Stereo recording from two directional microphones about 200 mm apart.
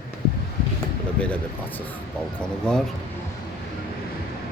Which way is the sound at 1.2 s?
5° left (ahead or behind).